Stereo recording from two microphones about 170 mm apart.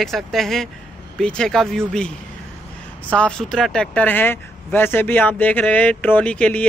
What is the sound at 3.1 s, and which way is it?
Speech, 5° left (ahead or behind).